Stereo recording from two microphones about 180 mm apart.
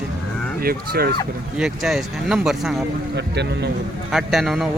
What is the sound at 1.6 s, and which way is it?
Speech, centre (ahead or behind).